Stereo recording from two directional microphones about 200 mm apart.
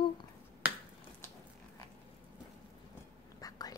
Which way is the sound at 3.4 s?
20° left (ahead or behind).